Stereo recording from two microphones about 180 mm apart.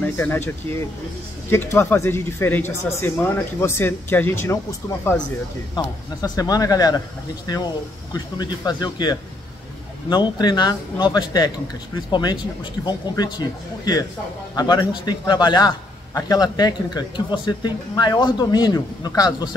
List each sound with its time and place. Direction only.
0.0 s speech: 10° left (ahead or behind)